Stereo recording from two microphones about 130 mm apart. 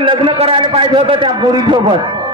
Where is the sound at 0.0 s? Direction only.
40° right (ahead or behind).